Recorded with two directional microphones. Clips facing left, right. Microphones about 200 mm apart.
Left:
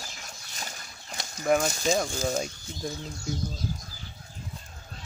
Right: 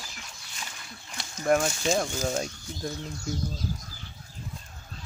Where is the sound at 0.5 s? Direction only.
40° left (ahead or behind).